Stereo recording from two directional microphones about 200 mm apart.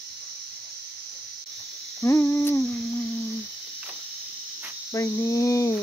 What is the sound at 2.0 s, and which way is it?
Humming, 10° left (ahead or behind).